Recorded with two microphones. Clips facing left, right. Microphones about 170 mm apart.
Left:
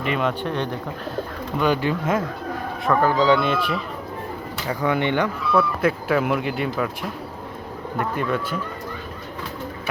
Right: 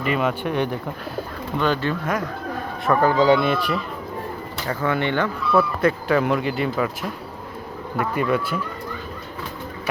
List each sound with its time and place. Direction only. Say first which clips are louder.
0.0 s speech: right 1 dB; 5° right (ahead or behind)
1.5 s speech: left 1 dB; 10° left (ahead or behind)
2.9 s speech: right 1 dB; 15° right (ahead or behind)
4.7 s speech: left 1 dB; 15° left (ahead or behind)
5.5 s speech: right 2 dB; centre (ahead or behind)
7.9 s speech: right 2 dB; 10° right (ahead or behind)